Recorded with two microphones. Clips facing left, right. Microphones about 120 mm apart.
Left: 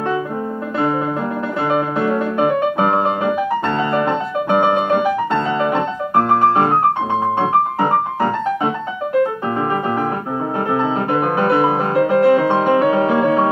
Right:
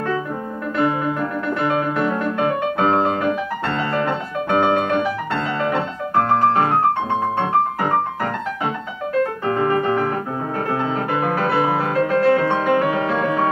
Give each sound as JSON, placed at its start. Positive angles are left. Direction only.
{"t": 1.7, "sound": "music", "side_deg": 20}
{"t": 9.2, "sound": "piano", "side_deg": 15}
{"t": 10.7, "sound": "music", "side_deg": 20}